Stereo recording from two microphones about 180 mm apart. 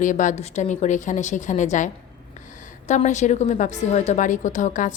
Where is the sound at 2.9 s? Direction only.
40° left (ahead or behind).